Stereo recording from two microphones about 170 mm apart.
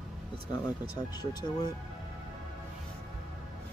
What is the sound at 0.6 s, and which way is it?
Speech, 25° left (ahead or behind).